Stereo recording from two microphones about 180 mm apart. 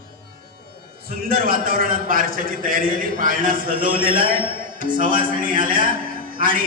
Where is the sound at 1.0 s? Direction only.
55° right (ahead or behind).